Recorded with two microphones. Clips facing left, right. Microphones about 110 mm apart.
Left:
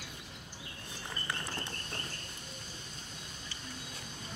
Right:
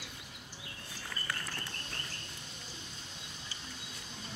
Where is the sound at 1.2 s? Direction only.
25° left (ahead or behind).